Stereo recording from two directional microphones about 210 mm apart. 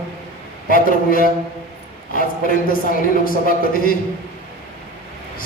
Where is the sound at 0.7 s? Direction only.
40° left (ahead or behind).